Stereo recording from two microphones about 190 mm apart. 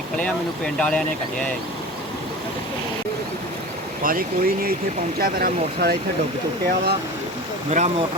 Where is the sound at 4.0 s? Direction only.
50° right (ahead or behind).